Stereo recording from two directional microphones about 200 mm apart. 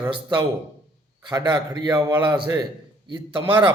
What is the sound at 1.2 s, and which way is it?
A man's voice, 20° right (ahead or behind).